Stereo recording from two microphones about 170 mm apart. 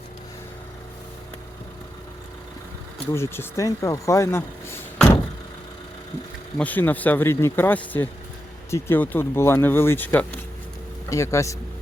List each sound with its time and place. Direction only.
3.1 s speech: 15° left (ahead or behind)
6.6 s speech: 10° left (ahead or behind)